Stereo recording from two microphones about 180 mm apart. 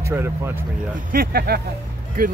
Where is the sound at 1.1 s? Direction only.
55° right (ahead or behind).